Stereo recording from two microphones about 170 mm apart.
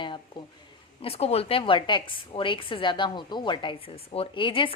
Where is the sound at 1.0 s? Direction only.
35° left (ahead or behind).